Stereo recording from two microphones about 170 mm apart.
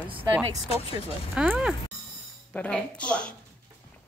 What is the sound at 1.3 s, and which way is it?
Speech, 5° right (ahead or behind).